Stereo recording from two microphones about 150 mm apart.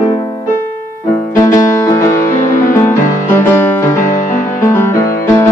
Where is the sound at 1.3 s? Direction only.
20° left (ahead or behind).